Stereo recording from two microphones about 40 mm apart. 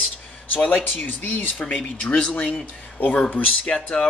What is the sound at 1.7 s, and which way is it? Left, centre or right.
Speech, left.